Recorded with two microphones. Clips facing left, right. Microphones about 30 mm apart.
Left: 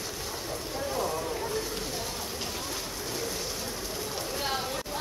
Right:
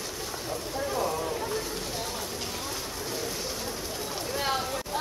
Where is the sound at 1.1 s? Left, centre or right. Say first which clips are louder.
Right 1 dB; centre.